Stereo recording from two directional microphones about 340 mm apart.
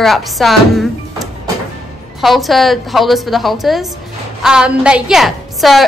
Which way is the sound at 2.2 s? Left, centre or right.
Centre.